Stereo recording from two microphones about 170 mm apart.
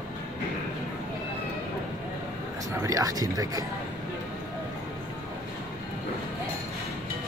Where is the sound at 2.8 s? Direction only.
20° right (ahead or behind).